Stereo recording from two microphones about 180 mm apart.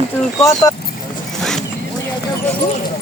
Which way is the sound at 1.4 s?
5° left (ahead or behind).